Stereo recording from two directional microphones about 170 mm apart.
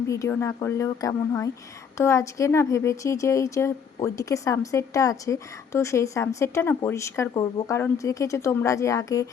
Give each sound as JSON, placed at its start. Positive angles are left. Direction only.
{"t": 0.1, "sound": "speech", "side_deg": 15}